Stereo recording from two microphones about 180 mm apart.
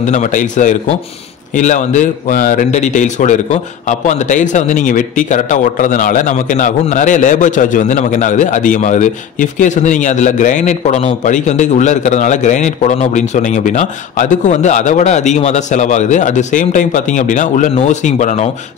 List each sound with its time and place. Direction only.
0.0 s speech: 45° left (ahead or behind)